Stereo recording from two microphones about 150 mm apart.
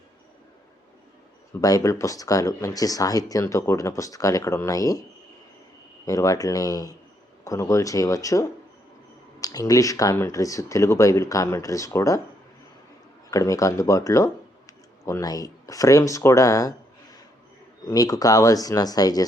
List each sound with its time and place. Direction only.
1.6 s speech: 25° left (ahead or behind)
6.1 s speech: 25° left (ahead or behind)
13.3 s speech: 20° left (ahead or behind)
17.8 s speech: 25° left (ahead or behind)